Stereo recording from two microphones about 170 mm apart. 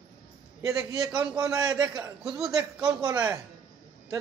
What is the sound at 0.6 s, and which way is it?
A man's voice, 20° right (ahead or behind).